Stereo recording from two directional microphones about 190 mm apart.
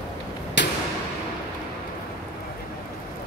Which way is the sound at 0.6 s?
70° left (ahead or behind).